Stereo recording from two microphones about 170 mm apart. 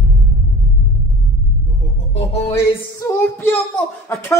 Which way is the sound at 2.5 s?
15° left (ahead or behind).